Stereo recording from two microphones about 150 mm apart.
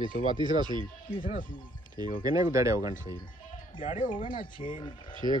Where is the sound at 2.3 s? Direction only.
20° right (ahead or behind).